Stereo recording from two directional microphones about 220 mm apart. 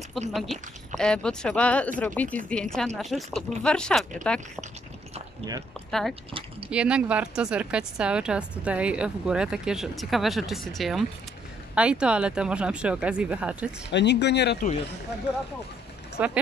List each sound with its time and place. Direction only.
0.3 s speech: centre (ahead or behind)
5.4 s speech: 15° right (ahead or behind)
5.9 s speech: centre (ahead or behind)
13.8 s speech: 50° left (ahead or behind)
16.2 s speech: 5° right (ahead or behind)